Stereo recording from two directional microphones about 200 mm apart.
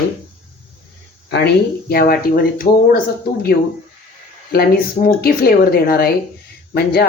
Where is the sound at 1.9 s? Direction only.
50° left (ahead or behind).